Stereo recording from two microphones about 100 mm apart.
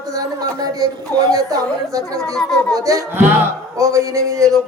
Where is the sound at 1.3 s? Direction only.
35° right (ahead or behind).